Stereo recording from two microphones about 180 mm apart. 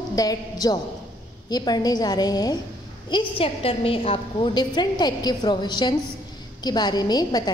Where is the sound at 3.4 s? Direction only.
30° left (ahead or behind).